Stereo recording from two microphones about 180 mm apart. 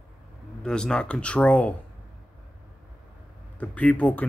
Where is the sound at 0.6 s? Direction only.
5° left (ahead or behind).